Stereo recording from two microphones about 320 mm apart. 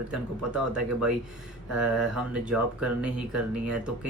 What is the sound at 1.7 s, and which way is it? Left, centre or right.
Speech, centre.